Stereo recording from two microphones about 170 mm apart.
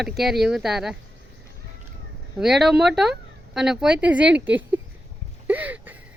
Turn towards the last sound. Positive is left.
turn(degrees=-10)  # may be behind; listen again after turning